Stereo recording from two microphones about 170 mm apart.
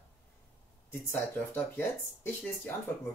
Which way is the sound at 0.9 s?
15° left (ahead or behind).